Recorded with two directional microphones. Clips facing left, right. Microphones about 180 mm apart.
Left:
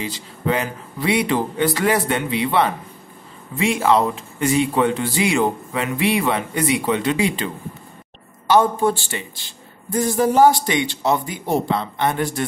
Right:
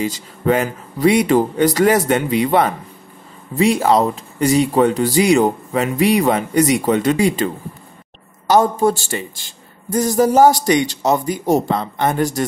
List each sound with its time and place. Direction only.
0.0 s speech: 45° right (ahead or behind)